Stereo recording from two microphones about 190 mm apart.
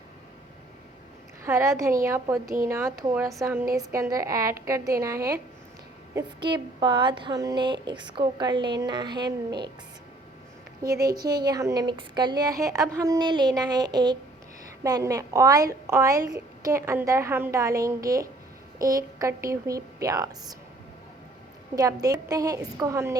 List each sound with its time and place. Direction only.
1.5 s a woman's voice: 15° right (ahead or behind)
11.0 s a woman's voice: 20° right (ahead or behind)
21.8 s a woman's voice: 20° right (ahead or behind)